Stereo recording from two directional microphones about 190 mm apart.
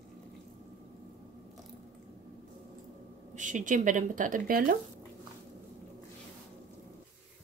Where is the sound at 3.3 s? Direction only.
40° right (ahead or behind).